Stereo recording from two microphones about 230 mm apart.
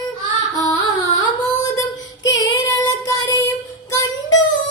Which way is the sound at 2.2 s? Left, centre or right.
Centre.